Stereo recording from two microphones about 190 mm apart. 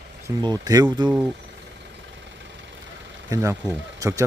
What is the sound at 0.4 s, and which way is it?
Speech, 20° right (ahead or behind).